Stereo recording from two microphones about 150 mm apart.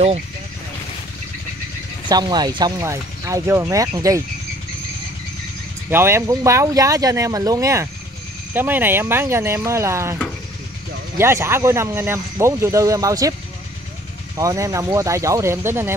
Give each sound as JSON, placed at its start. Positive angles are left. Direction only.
{"t": 2.0, "sound": "speech", "side_deg": -30}
{"t": 5.9, "sound": "speech", "side_deg": -15}
{"t": 11.1, "sound": "speech", "side_deg": -15}
{"t": 14.3, "sound": "speech", "side_deg": -20}